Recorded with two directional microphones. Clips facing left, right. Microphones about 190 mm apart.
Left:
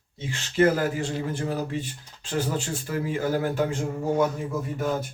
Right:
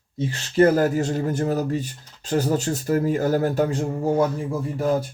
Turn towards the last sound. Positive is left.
turn(degrees=-30)  # may be behind; listen again after turning